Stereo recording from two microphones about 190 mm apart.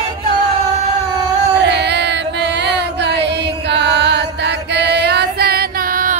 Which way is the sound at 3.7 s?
65° right (ahead or behind).